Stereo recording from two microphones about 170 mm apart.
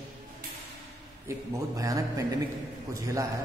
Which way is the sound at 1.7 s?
20° right (ahead or behind).